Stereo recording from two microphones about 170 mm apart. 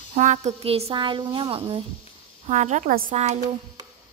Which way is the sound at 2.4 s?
45° right (ahead or behind).